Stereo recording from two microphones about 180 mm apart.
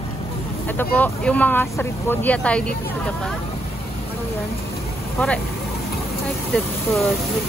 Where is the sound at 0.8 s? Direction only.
10° left (ahead or behind).